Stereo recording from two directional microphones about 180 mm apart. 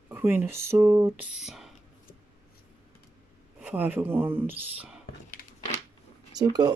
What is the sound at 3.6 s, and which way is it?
Speech, 10° right (ahead or behind).